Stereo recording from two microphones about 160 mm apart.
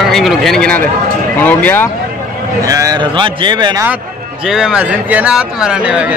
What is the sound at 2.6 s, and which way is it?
Speech, 20° right (ahead or behind).